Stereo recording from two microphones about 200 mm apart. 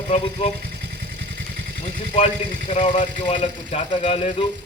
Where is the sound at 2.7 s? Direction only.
35° left (ahead or behind).